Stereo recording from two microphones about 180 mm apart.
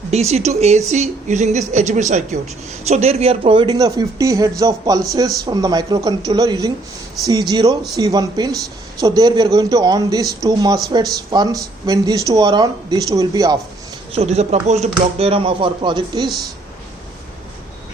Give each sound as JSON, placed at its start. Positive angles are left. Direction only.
{"t": 0.1, "sound": "a woman's voice", "side_deg": -35}
{"t": 14.1, "sound": "a woman's voice", "side_deg": -35}